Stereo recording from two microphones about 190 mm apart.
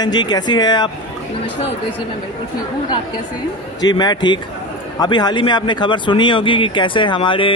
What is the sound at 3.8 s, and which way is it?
Speech, 20° left (ahead or behind).